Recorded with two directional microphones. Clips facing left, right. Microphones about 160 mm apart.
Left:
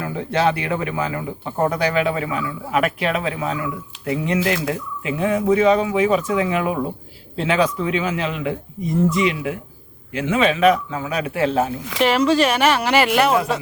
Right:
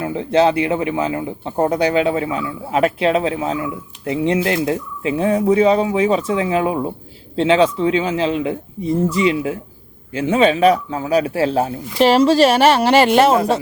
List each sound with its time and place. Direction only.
0.0 s a man's voice: 25° right (ahead or behind)